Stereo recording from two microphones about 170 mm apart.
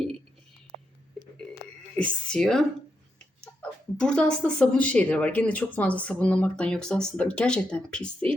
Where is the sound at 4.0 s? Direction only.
5° left (ahead or behind).